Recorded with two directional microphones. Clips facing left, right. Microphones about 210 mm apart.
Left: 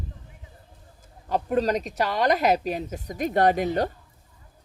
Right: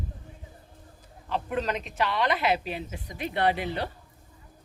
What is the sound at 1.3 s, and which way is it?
Speech, 40° left (ahead or behind).